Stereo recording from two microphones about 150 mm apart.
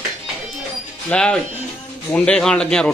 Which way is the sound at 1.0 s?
5° left (ahead or behind).